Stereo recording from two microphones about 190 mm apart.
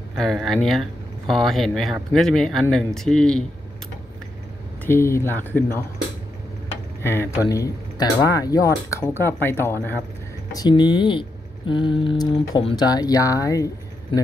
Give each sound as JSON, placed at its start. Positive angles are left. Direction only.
{"t": 0.2, "sound": "speech", "side_deg": 0}
{"t": 4.8, "sound": "speech", "side_deg": 15}
{"t": 7.0, "sound": "speech", "side_deg": 10}